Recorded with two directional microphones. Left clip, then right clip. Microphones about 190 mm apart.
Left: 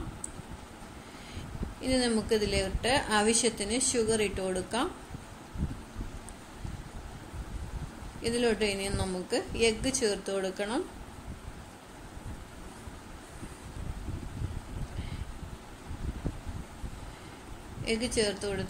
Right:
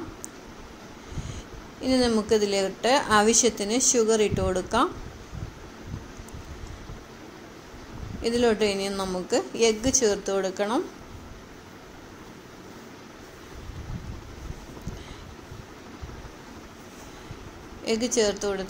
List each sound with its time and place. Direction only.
1.8 s a woman's voice: 5° right (ahead or behind)
8.2 s a woman's voice: 5° right (ahead or behind)
17.8 s a woman's voice: 5° right (ahead or behind)